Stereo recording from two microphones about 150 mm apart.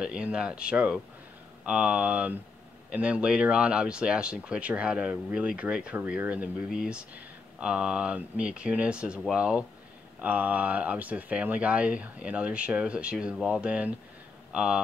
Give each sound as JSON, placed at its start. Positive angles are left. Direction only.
{"t": 0.0, "sound": "speech", "side_deg": -5}